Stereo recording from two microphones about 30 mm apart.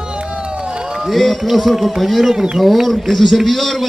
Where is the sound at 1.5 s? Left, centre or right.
Centre.